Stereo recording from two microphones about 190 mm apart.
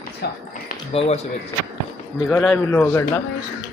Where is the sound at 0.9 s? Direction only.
35° left (ahead or behind).